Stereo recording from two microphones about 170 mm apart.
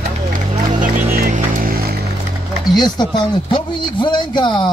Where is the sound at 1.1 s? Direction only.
60° right (ahead or behind).